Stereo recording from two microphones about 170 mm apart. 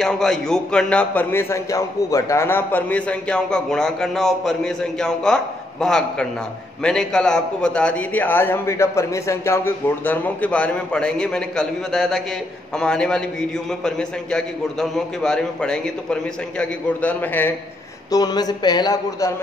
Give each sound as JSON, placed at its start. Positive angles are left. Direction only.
{"t": 0.0, "sound": "a man's voice", "side_deg": 5}
{"t": 18.1, "sound": "speech", "side_deg": 25}